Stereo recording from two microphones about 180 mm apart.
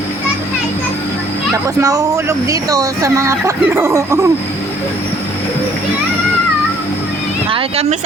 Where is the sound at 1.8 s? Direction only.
20° right (ahead or behind).